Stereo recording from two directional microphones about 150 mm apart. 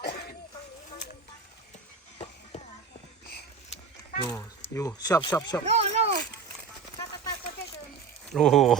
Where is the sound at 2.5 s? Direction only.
50° left (ahead or behind).